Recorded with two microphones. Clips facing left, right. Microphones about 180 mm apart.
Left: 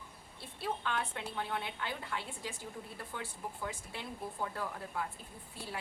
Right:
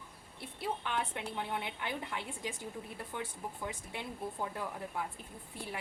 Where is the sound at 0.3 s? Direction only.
15° right (ahead or behind).